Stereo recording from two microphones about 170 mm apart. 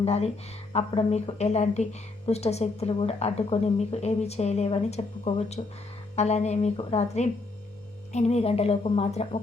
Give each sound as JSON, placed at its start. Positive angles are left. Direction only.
{"t": 0.0, "sound": "speech", "side_deg": 35}